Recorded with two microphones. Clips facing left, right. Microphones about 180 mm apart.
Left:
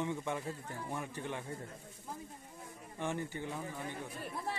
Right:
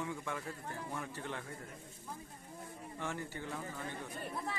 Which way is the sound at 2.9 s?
20° left (ahead or behind).